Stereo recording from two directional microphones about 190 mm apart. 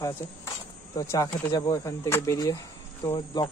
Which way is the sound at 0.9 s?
20° left (ahead or behind).